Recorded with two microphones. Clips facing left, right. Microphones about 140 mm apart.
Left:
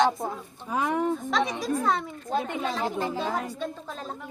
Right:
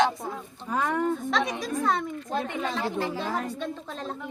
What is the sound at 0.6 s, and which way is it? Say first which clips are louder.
Speech: even; 10° left (ahead or behind).